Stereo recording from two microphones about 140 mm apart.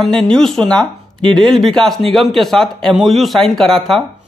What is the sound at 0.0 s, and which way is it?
Speech, 5° left (ahead or behind).